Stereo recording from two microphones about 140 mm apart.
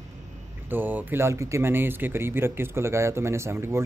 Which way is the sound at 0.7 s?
15° right (ahead or behind).